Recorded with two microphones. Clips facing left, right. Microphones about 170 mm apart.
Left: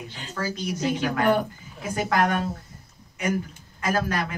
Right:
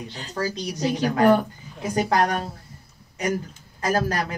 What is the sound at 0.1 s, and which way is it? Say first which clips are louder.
A man's voice: right 3 dB; 40° right (ahead or behind).